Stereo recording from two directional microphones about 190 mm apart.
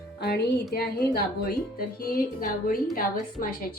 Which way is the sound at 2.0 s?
50° left (ahead or behind).